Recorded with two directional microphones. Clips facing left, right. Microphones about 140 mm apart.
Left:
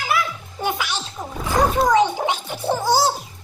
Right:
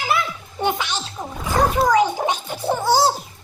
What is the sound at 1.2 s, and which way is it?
Wild animals, centre (ahead or behind).